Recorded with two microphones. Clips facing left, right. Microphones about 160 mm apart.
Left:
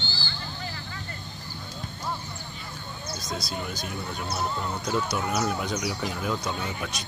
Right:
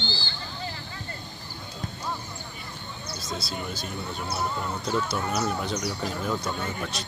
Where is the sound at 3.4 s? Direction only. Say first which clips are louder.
Even; 15° left (ahead or behind).